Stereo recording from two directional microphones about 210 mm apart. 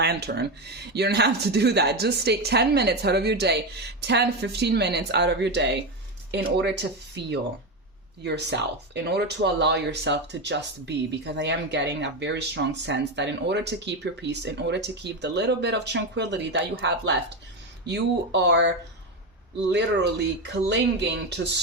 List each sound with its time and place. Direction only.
0.0 s speech: 50° right (ahead or behind)
7.2 s speech: 55° right (ahead or behind)
19.7 s speech: 55° right (ahead or behind)